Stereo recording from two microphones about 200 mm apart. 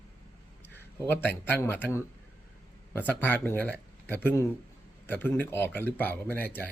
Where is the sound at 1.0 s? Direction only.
10° left (ahead or behind).